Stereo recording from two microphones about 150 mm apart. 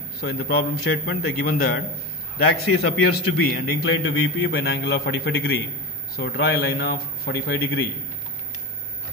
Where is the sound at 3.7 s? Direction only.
90° left.